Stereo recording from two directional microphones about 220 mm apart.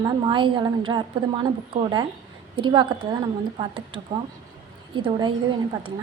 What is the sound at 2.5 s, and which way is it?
A woman's voice, 20° right (ahead or behind).